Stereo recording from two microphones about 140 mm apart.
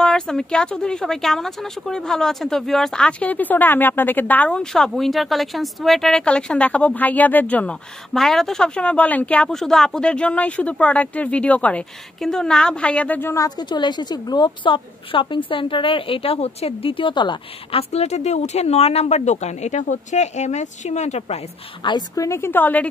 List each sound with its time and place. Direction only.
0.0 s speech: 5° left (ahead or behind); by 21.4 s 55° left (ahead or behind)
21.8 s a woman's voice: 25° left (ahead or behind)